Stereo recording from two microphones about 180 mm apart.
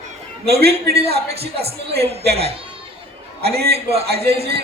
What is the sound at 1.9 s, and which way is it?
Speech, 60° right (ahead or behind).